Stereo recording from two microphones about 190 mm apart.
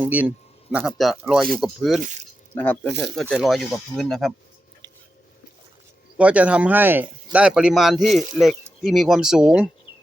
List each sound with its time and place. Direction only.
0.0 s speech: 10° right (ahead or behind)
6.1 s speech: 5° right (ahead or behind)